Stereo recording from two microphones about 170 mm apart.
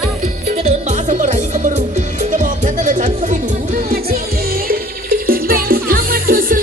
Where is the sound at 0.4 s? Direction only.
40° right (ahead or behind).